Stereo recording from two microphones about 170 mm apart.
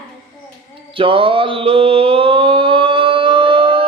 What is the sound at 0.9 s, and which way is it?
Mantra, 30° right (ahead or behind).